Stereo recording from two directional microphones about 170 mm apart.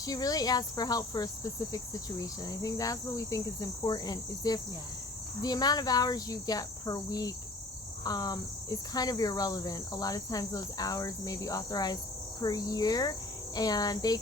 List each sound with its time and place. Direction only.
0.0 s cricket: 20° left (ahead or behind)